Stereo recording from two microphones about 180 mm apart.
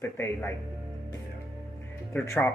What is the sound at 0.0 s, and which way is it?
Speech, 10° left (ahead or behind).